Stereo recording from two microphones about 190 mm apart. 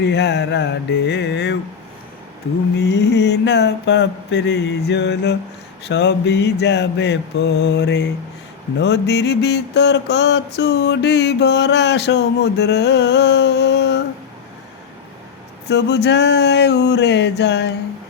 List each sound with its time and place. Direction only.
0.0 s mantra: 65° left (ahead or behind)
2.7 s mantra: 65° left (ahead or behind)
15.7 s mantra: 60° left (ahead or behind)